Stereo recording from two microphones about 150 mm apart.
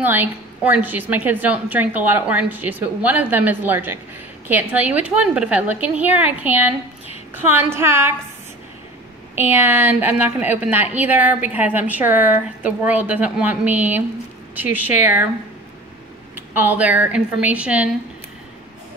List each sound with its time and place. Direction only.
0.0 s a woman's voice: 15° right (ahead or behind)
9.3 s a woman's voice: 15° right (ahead or behind)
16.3 s a woman's voice: 15° right (ahead or behind)